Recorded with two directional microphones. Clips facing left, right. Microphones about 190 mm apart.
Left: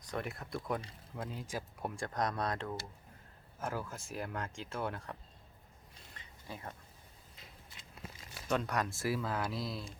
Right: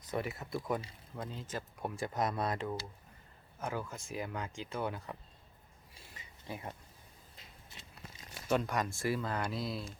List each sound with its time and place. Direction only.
0.1 s speech: 5° right (ahead or behind)
2.0 s speech: 5° right (ahead or behind)
5.9 s a sound: 10° right (ahead or behind)
8.4 s speech: centre (ahead or behind)